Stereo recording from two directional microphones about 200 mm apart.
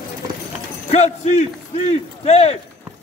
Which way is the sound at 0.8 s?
35° left (ahead or behind).